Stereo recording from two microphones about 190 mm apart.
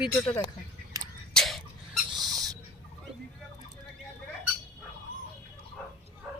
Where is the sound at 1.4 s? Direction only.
Centre (ahead or behind).